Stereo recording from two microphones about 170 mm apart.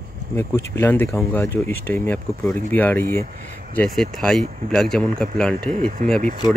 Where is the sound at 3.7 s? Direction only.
Centre (ahead or behind).